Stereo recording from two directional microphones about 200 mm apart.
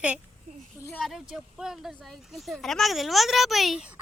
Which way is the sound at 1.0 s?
Centre (ahead or behind).